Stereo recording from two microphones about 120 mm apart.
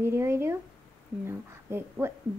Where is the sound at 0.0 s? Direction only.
20° right (ahead or behind).